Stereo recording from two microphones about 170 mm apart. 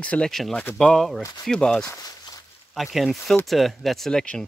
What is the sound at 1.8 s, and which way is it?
Speech, 20° left (ahead or behind).